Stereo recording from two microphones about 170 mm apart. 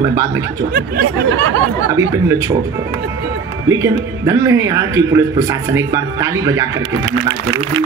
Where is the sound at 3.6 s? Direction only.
20° right (ahead or behind).